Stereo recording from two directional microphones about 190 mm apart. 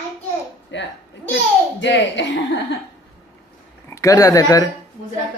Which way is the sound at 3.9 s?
15° left (ahead or behind).